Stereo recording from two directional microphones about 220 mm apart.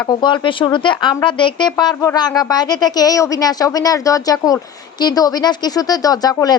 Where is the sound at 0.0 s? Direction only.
20° left (ahead or behind).